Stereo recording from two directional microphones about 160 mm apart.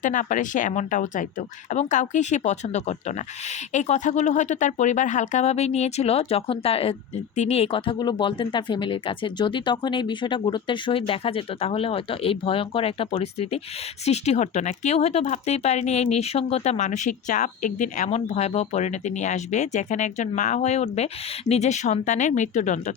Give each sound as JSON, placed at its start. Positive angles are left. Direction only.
{"t": 0.0, "sound": "speech", "side_deg": 55}